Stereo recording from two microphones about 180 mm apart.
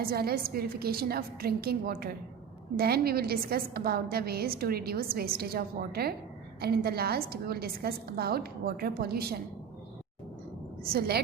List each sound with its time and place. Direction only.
0.0 s a woman's voice: 60° right (ahead or behind)
10.9 s a woman's voice: 60° right (ahead or behind)